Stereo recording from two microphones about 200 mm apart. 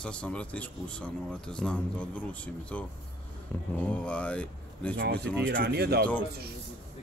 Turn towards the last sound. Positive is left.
turn(degrees=-50)  # may be behind; listen again after turning